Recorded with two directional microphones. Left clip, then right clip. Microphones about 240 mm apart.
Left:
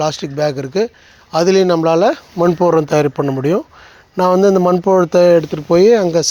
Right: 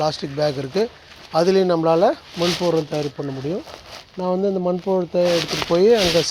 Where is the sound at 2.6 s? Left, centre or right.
Left.